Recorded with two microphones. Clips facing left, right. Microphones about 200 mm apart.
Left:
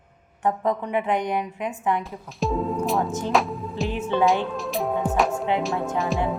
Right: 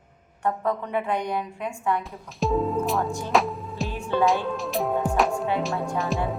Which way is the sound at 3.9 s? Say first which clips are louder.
Left 5 dB; 20° left (ahead or behind).